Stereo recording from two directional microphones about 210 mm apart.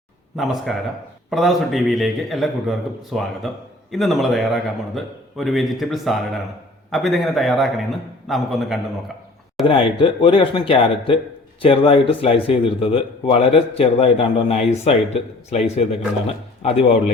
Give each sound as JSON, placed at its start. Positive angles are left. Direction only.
{"t": 0.3, "sound": "a man's voice", "side_deg": 0}
{"t": 9.6, "sound": "speech", "side_deg": 25}